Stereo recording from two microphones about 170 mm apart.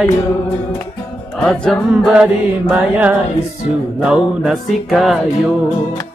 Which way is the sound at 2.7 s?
10° right (ahead or behind).